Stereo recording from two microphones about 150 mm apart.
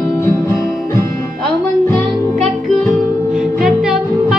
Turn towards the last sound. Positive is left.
turn(degrees=0)  # may be behind; listen again after turning